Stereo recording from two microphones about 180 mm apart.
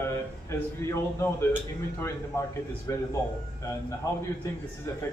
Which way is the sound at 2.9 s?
20° left (ahead or behind).